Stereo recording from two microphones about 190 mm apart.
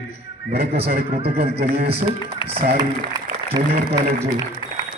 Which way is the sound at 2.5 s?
20° right (ahead or behind).